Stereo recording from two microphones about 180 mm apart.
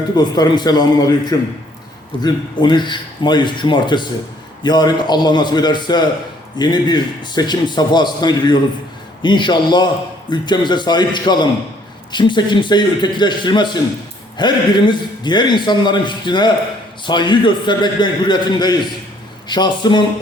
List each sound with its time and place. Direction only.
0.2 s a man's voice: 20° left (ahead or behind)